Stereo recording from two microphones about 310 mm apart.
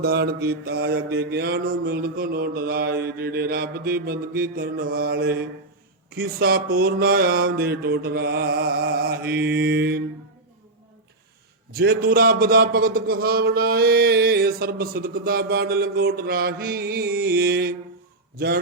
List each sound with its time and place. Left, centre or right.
0.0 s a man's voice: right
11.7 s a man's voice: right